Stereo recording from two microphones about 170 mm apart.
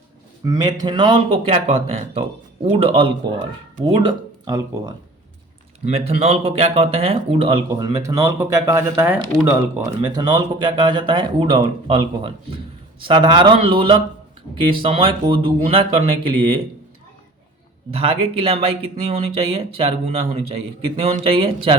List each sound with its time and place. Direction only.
0.4 s speech: 25° right (ahead or behind)
5.8 s speech: 40° right (ahead or behind)
17.9 s speech: 35° right (ahead or behind)